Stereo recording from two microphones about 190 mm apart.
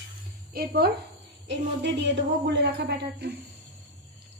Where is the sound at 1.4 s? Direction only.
70° right (ahead or behind).